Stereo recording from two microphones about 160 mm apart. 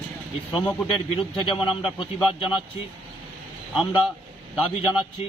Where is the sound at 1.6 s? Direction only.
30° left (ahead or behind).